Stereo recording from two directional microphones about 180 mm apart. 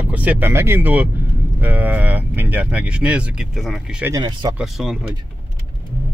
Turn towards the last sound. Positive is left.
turn(degrees=0)  # may be behind; listen again after turning